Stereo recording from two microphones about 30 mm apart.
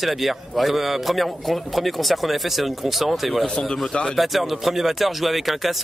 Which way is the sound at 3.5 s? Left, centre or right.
Left.